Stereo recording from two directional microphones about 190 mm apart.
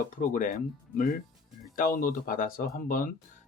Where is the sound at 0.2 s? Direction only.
40° left (ahead or behind).